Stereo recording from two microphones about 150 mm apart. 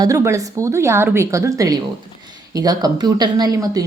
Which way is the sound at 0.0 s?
20° right (ahead or behind).